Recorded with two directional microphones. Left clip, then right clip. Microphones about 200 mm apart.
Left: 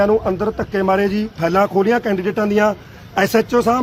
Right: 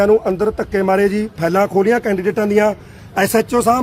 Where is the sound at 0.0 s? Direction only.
30° right (ahead or behind).